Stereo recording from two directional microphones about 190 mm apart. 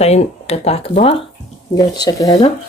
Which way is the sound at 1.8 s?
20° left (ahead or behind).